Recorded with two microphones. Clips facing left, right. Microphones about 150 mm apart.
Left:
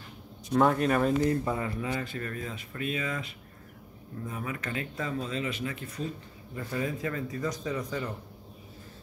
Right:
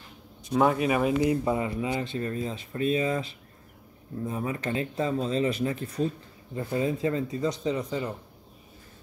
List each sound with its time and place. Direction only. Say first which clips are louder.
0.5 s speech: right 1 dB; 5° right (ahead or behind); by 8.1 s 25° right (ahead or behind)